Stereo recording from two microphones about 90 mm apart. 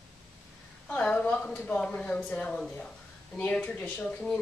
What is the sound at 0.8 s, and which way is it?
Speech, 15° left (ahead or behind).